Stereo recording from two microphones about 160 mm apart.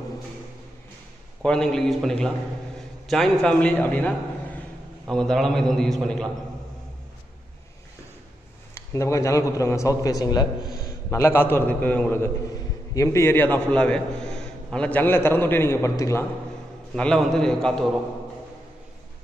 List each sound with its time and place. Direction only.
1.4 s a man's voice: 5° left (ahead or behind)
8.7 s a man's voice: 20° left (ahead or behind)
16.9 s a man's voice: 5° left (ahead or behind)